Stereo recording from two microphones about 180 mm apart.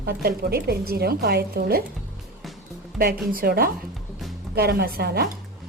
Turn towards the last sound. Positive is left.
turn(degrees=-60)  # may be behind; listen again after turning